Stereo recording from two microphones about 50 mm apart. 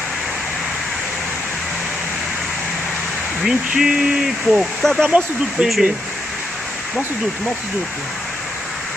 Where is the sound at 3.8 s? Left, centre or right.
Centre.